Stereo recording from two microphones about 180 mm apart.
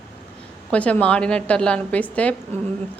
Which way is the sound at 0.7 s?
5° left (ahead or behind).